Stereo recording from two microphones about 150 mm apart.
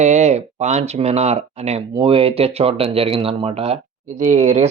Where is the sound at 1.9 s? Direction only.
35° right (ahead or behind).